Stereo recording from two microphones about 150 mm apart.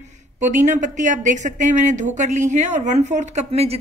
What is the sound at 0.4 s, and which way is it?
Speech, 55° right (ahead or behind).